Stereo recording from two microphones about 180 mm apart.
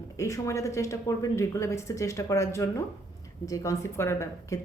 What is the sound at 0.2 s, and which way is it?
A woman's voice, 15° left (ahead or behind).